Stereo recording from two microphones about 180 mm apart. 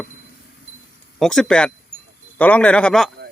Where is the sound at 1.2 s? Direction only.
5° left (ahead or behind).